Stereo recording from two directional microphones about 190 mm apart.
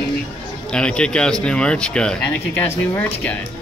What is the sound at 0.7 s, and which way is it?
Speech, 5° left (ahead or behind).